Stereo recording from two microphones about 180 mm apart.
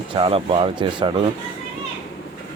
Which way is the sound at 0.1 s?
30° right (ahead or behind).